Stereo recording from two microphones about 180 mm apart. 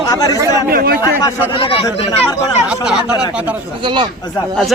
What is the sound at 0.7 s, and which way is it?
Speech, 55° right (ahead or behind).